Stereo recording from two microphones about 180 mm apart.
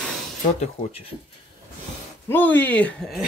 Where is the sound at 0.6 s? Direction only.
35° left (ahead or behind).